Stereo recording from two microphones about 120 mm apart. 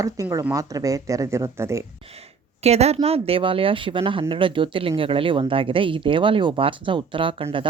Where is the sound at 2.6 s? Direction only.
60° right (ahead or behind).